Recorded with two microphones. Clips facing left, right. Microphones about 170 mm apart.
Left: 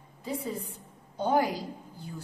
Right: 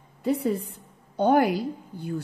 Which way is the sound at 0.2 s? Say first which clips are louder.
Right 9 dB; 65° right (ahead or behind).